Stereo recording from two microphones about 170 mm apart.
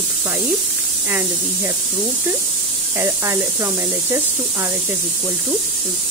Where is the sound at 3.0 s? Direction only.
15° right (ahead or behind).